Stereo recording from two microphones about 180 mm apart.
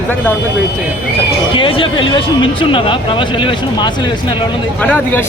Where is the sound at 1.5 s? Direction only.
30° left (ahead or behind).